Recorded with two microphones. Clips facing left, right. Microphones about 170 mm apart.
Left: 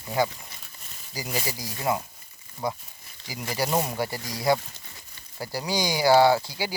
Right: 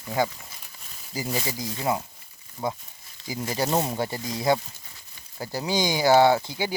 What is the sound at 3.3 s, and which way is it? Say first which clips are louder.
Speech: right 1 dB; 25° right (ahead or behind).